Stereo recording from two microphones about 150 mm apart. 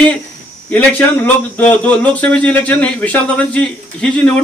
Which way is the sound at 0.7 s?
10° left (ahead or behind).